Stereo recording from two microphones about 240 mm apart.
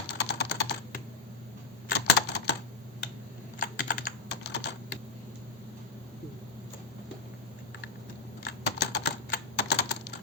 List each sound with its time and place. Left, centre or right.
0.1 s typing: left
3.6 s typing: left
8.4 s typing: left